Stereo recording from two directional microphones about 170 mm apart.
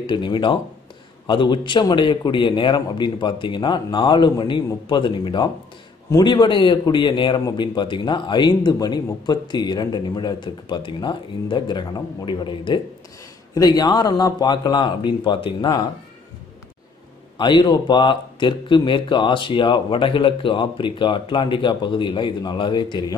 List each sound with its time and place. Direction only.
0.0 s a man's voice: 30° left (ahead or behind)
17.4 s a man's voice: 25° left (ahead or behind)